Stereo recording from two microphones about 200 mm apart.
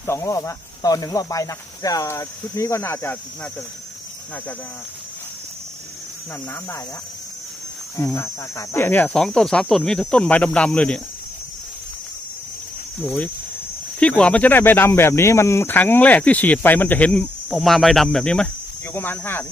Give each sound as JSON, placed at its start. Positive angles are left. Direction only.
{"t": 0.0, "sound": "speech", "side_deg": 15}
{"t": 6.5, "sound": "speech", "side_deg": 15}
{"t": 7.9, "sound": "speech", "side_deg": 15}
{"t": 13.0, "sound": "speech", "side_deg": 10}